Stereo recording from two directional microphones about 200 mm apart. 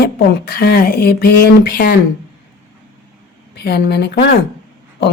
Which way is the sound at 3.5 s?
55° left (ahead or behind).